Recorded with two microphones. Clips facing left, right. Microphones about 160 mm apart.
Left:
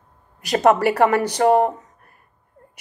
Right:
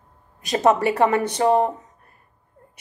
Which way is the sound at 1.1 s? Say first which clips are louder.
Left 2 dB; 25° right (ahead or behind).